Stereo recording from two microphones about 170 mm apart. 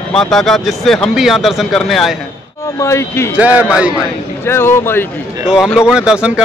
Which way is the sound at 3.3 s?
10° right (ahead or behind).